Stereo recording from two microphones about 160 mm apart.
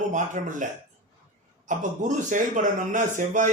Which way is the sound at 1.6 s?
50° right (ahead or behind).